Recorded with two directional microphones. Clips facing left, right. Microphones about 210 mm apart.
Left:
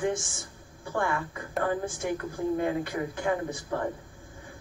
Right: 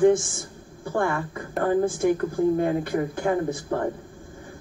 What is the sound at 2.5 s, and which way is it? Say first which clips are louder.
A woman's voice: right 5 dB; 40° right (ahead or behind).